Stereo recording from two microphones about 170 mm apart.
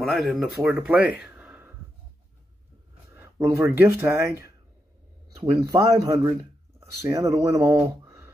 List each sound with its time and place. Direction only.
0.0 s speech: centre (ahead or behind)
3.1 s speech: 15° right (ahead or behind)